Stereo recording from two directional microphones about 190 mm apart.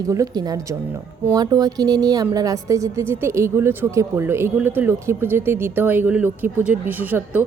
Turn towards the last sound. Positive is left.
turn(degrees=-10)  # may be behind; listen again after turning